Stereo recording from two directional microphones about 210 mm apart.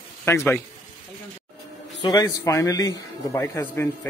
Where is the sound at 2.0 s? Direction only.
15° left (ahead or behind).